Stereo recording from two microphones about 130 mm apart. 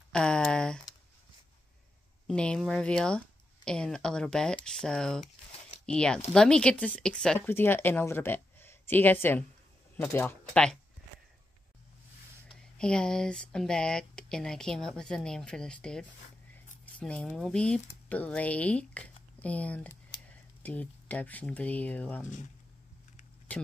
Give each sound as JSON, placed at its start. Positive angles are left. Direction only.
{"t": 0.1, "sound": "a sound", "side_deg": 5}
{"t": 2.2, "sound": "speech", "side_deg": 5}
{"t": 7.3, "sound": "speech", "side_deg": 15}
{"t": 10.5, "sound": "speech", "side_deg": 5}
{"t": 12.7, "sound": "speech", "side_deg": 5}